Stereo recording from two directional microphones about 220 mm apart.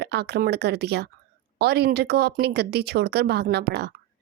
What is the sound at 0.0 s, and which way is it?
A woman's voice, 50° right (ahead or behind).